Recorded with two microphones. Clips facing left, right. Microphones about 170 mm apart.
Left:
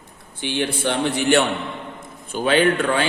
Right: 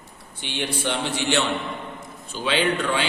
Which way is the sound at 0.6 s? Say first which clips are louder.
Left 4 dB; 55° left (ahead or behind).